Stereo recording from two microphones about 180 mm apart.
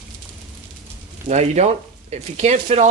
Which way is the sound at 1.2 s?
40° right (ahead or behind).